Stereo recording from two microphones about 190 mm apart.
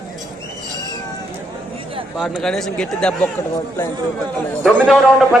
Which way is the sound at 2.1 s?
Centre (ahead or behind).